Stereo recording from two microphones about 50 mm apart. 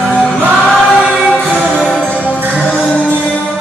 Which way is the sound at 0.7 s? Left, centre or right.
Centre.